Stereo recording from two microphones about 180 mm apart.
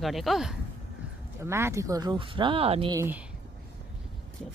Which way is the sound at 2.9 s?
10° right (ahead or behind).